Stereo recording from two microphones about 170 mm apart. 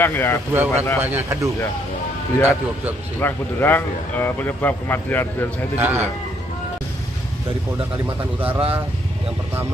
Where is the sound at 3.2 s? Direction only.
10° left (ahead or behind).